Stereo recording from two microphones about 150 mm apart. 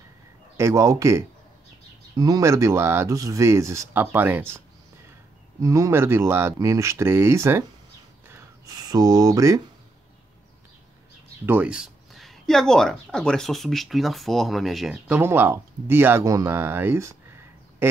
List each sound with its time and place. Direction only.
0.6 s speech: 20° right (ahead or behind)
11.4 s speech: 10° right (ahead or behind)